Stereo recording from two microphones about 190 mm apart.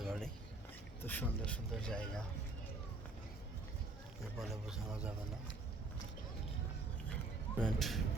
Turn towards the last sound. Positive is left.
turn(degrees=0)  # may be behind; listen again after turning